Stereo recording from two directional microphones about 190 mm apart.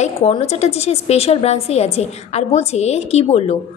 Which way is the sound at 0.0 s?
35° left (ahead or behind).